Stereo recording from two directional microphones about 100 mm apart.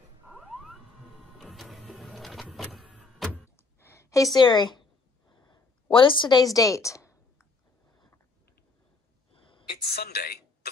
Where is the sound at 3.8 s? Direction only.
30° left (ahead or behind); by 4.8 s 50° left (ahead or behind).